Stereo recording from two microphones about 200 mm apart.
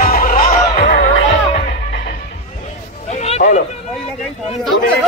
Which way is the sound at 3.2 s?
30° left (ahead or behind).